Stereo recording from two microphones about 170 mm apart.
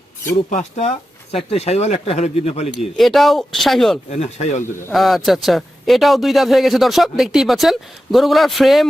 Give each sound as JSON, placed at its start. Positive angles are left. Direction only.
{"t": 0.5, "sound": "speech", "side_deg": 40}
{"t": 2.9, "sound": "a man's voice", "side_deg": 0}
{"t": 4.1, "sound": "speech", "side_deg": 40}
{"t": 4.9, "sound": "a man's voice", "side_deg": 0}